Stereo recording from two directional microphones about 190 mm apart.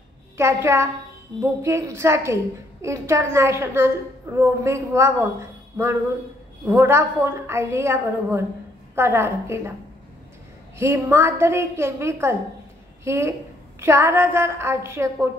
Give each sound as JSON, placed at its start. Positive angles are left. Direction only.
{"t": 0.4, "sound": "a woman's voice", "side_deg": -15}
{"t": 10.8, "sound": "a woman's voice", "side_deg": -15}